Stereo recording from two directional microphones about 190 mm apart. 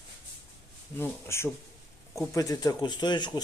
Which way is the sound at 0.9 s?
15° left (ahead or behind).